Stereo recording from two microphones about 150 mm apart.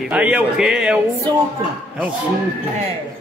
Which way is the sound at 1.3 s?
30° right (ahead or behind).